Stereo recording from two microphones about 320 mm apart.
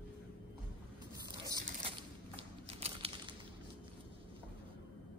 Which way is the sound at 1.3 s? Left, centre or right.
Centre.